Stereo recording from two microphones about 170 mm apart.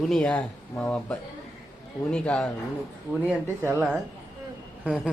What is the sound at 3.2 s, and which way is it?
Speech, 15° right (ahead or behind).